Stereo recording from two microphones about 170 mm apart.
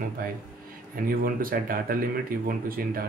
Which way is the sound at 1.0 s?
60° right (ahead or behind).